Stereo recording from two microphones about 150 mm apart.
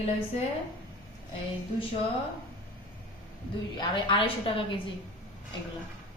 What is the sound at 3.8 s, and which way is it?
Speech, 35° left (ahead or behind).